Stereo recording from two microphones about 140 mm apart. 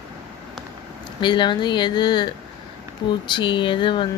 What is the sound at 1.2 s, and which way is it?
Speech, 35° left (ahead or behind).